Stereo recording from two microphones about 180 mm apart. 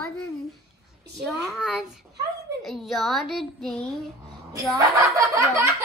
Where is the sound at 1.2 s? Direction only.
Centre (ahead or behind).